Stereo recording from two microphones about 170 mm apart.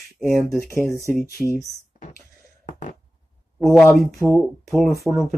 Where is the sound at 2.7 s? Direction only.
40° left (ahead or behind).